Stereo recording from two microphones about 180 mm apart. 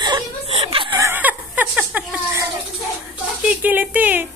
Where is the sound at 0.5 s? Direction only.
30° right (ahead or behind).